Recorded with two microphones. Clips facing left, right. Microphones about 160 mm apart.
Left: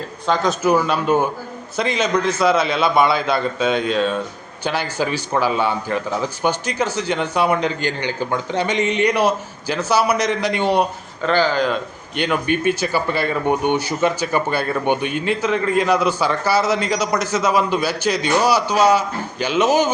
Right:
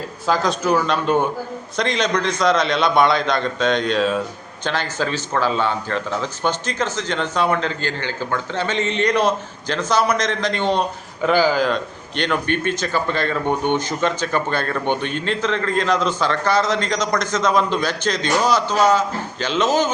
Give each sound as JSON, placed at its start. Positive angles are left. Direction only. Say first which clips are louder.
{"t": 0.3, "sound": "a man's voice", "louder": "left 1 dB", "side_deg": 0}
{"t": 11.2, "sound": "a man's voice", "louder": "right 1 dB", "side_deg": -10}